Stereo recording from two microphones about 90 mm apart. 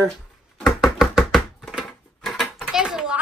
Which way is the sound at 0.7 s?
Centre (ahead or behind).